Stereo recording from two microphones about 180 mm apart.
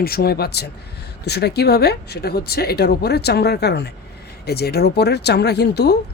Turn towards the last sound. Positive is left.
turn(degrees=65)  # may be behind; listen again after turning